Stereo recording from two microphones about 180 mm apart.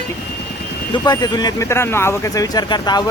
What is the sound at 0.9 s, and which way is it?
Speech, 20° left (ahead or behind).